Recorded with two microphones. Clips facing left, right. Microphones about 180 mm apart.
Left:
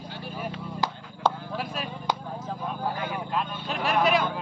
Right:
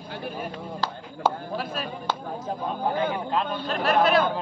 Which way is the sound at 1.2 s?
5° right (ahead or behind).